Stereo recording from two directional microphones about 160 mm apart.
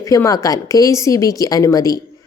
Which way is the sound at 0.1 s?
20° left (ahead or behind).